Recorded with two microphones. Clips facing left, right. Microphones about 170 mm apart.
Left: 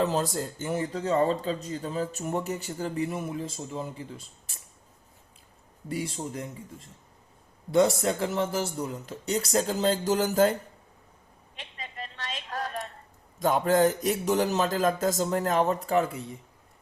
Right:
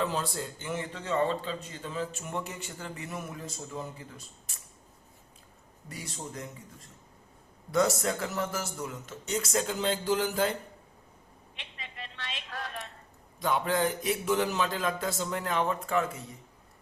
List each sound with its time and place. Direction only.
0.0 s speech: 40° left (ahead or behind)
5.9 s speech: 25° left (ahead or behind); by 10.6 s 45° left (ahead or behind)
11.5 s a sound: 40° left (ahead or behind)
13.4 s speech: 45° left (ahead or behind)